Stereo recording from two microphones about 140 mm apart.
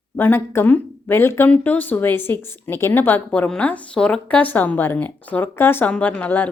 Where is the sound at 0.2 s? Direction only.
15° left (ahead or behind).